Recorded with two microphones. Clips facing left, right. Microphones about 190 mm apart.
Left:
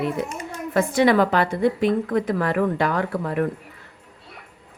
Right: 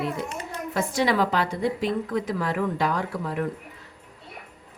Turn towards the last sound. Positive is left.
turn(degrees=60)  # may be behind; listen again after turning